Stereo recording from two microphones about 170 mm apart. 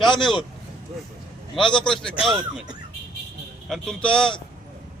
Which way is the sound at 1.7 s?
5° left (ahead or behind).